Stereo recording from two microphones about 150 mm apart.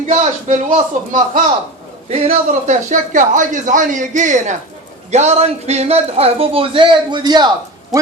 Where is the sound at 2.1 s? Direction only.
40° right (ahead or behind).